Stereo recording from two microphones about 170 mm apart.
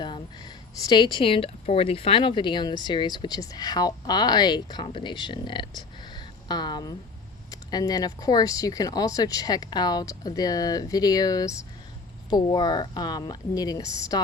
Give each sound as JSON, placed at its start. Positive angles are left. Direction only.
{"t": 0.0, "sound": "speech", "side_deg": 25}